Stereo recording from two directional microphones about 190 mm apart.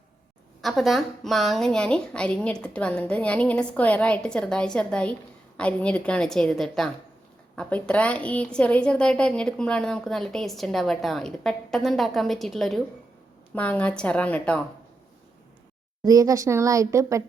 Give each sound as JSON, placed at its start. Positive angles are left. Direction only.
{"t": 0.6, "sound": "a woman's voice", "side_deg": 0}
{"t": 16.0, "sound": "speech", "side_deg": -20}